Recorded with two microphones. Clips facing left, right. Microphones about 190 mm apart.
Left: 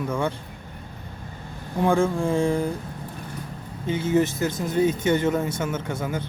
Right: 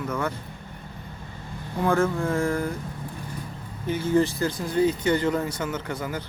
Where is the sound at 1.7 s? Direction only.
15° left (ahead or behind).